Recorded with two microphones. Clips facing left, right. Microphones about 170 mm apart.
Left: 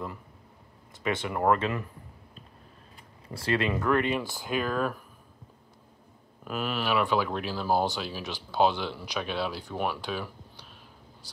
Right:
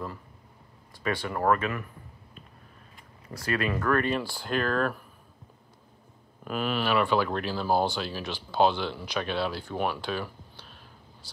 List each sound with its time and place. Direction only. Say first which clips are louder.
1.0 s speech: even; 20° left (ahead or behind)
3.3 s speech: left 1 dB; 25° left (ahead or behind)
4.5 s speech: right 2 dB; 10° left (ahead or behind)
6.4 s speech: right 2 dB; 5° left (ahead or behind)